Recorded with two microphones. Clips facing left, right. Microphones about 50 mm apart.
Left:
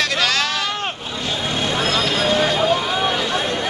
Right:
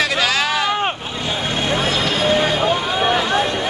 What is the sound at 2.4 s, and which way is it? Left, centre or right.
Music, centre.